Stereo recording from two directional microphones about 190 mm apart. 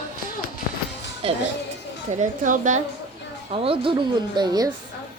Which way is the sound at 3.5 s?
30° right (ahead or behind).